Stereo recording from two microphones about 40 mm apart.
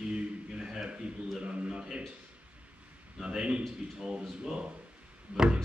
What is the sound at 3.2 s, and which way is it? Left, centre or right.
Speech, right.